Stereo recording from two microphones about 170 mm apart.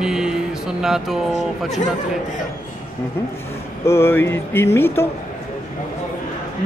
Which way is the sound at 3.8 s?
15° left (ahead or behind).